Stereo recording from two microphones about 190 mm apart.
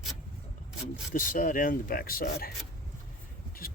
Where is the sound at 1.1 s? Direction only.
45° left (ahead or behind).